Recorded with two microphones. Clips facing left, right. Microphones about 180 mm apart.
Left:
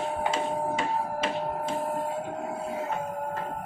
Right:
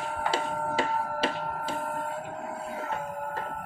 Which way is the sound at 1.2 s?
35° right (ahead or behind).